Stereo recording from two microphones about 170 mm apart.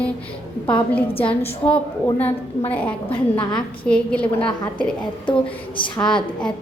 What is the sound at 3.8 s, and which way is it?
Speech, 5° left (ahead or behind).